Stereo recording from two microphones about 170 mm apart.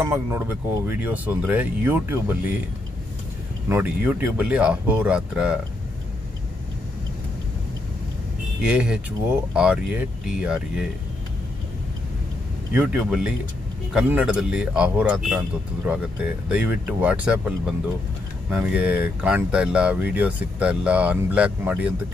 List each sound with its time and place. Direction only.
0.0 s speech: 15° right (ahead or behind)
3.6 s speech: 10° right (ahead or behind)
8.6 s speech: 5° right (ahead or behind)
12.7 s speech: 5° right (ahead or behind)